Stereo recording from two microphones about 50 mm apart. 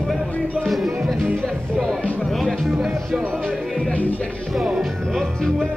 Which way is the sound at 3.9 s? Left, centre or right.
Left.